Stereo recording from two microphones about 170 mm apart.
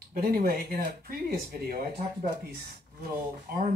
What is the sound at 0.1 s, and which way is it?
Speech, 60° right (ahead or behind).